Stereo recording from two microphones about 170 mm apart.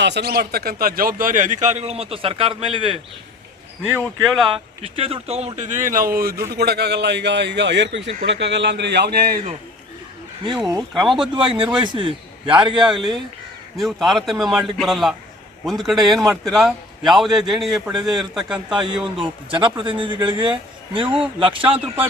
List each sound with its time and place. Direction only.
0.0 s a man's voice: 80° right; by 3.0 s 30° right (ahead or behind)
4.2 s a man's voice: centre (ahead or behind)
4.5 s a man's voice: 35° right (ahead or behind); by 9.4 s 65° right (ahead or behind)
10.4 s a man's voice: 25° right (ahead or behind)
11.8 s a man's voice: 30° right (ahead or behind)
12.8 s a man's voice: centre (ahead or behind)
19.1 s a man's voice: 30° right (ahead or behind)